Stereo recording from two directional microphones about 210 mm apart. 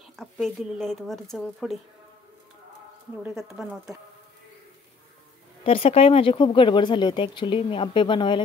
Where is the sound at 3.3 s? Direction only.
Centre (ahead or behind).